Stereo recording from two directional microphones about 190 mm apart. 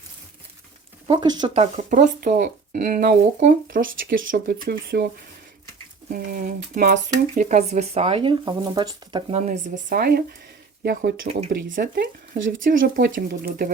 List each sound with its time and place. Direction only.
1.0 s speech: 25° right (ahead or behind); by 5.0 s 50° right (ahead or behind)
6.1 s speech: 45° right (ahead or behind); by 9.2 s 20° right (ahead or behind)
9.3 s speech: 40° right (ahead or behind)